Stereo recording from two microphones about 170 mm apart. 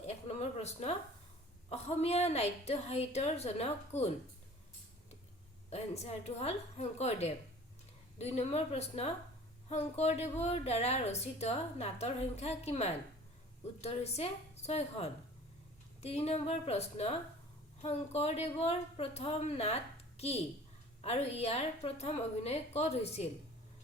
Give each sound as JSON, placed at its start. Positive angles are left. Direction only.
{"t": 0.1, "sound": "a woman's voice", "side_deg": 40}
{"t": 5.7, "sound": "a woman's voice", "side_deg": 40}